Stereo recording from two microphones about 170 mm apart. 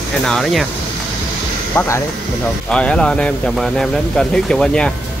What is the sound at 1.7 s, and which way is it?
Speech, 15° left (ahead or behind).